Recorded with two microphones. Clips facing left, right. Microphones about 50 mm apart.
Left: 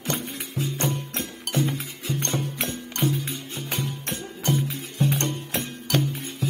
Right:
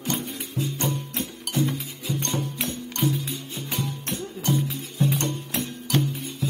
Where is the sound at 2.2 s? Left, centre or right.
Left.